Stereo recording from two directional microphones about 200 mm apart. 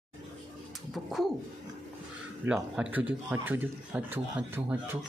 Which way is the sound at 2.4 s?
5° right (ahead or behind).